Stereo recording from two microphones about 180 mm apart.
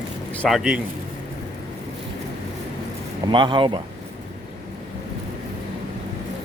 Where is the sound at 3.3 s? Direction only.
25° right (ahead or behind).